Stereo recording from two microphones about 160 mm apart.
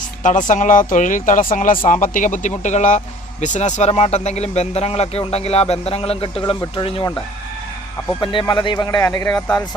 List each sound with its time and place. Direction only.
0.2 s speech: 50° left (ahead or behind); by 7.1 s 30° left (ahead or behind)
8.2 s speech: 30° left (ahead or behind)
9.0 s speech: 15° left (ahead or behind)